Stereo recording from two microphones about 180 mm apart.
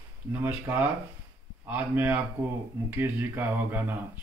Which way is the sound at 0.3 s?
10° right (ahead or behind).